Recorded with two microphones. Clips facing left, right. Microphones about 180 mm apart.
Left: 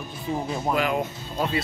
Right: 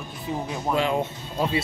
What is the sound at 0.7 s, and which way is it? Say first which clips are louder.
Speech: right 2 dB; 25° right (ahead or behind).